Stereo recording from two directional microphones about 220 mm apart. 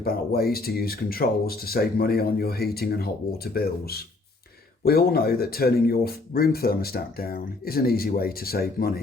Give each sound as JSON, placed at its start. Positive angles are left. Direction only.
{"t": 0.0, "sound": "speech", "side_deg": 45}